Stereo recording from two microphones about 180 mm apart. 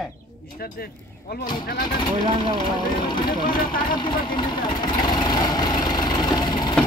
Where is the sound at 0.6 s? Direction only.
55° left (ahead or behind).